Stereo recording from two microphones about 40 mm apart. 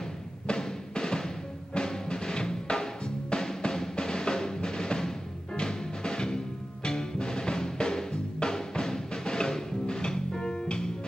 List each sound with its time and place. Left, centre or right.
0.5 s music: centre